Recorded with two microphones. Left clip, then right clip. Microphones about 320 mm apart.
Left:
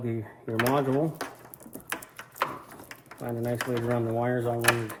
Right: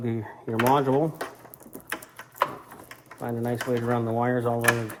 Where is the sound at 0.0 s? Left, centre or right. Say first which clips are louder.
Right 2 dB; centre.